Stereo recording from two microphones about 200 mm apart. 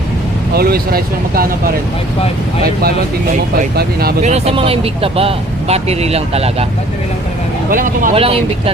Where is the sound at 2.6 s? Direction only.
50° right (ahead or behind).